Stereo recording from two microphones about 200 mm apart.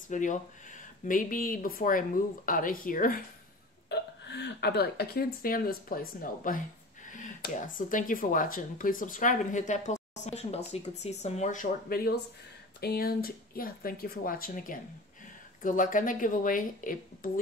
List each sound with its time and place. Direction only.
0.1 s speech: 40° left (ahead or behind)
3.9 s speech: 60° left (ahead or behind); by 17.3 s 45° left (ahead or behind)